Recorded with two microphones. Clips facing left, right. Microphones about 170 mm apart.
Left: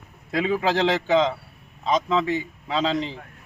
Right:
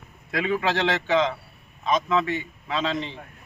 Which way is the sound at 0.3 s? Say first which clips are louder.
Left 2 dB; 30° left (ahead or behind).